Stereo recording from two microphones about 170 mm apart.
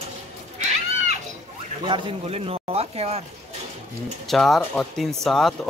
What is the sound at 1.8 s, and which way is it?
Speech, 30° right (ahead or behind).